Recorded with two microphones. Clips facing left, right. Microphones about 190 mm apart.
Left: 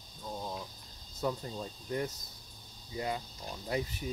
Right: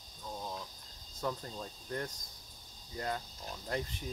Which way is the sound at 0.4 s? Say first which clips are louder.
Left 2 dB; 15° left (ahead or behind).